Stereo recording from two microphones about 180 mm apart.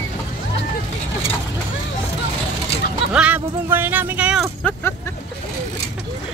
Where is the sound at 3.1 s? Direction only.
10° right (ahead or behind).